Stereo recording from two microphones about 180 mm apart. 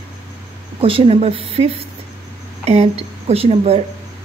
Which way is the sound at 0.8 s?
30° right (ahead or behind).